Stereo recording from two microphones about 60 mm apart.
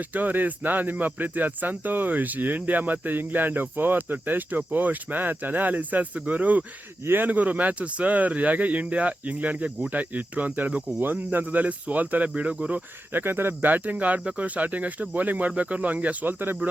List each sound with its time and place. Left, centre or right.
0.1 s speech: right
13.1 s speech: right